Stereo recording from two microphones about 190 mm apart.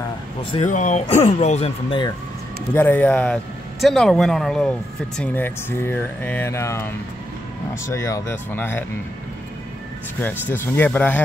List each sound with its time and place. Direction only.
0.7 s speech: 40° left (ahead or behind); by 2.1 s 25° left (ahead or behind)
2.7 s speech: 10° left (ahead or behind)
7.9 s speech: 15° left (ahead or behind)
10.5 s speech: 10° left (ahead or behind)